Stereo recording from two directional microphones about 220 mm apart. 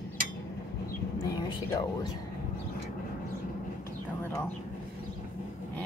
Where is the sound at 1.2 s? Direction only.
15° left (ahead or behind).